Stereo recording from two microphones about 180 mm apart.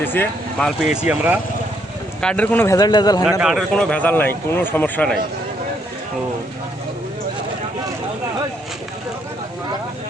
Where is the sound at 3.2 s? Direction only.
Centre (ahead or behind).